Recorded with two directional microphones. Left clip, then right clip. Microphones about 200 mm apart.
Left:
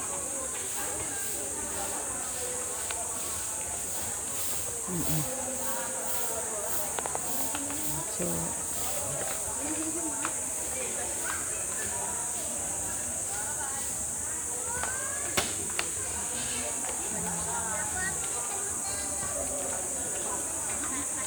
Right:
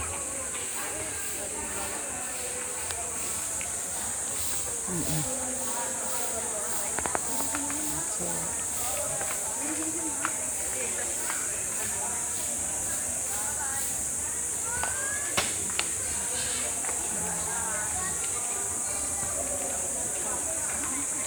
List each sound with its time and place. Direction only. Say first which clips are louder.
15.4 s music: right 1 dB; 50° left (ahead or behind)